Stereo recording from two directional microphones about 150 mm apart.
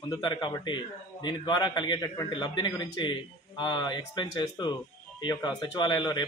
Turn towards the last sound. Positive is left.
turn(degrees=30)  # may be behind; listen again after turning